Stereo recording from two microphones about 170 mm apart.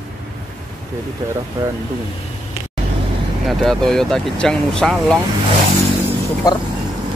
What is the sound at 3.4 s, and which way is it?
Speech, centre (ahead or behind).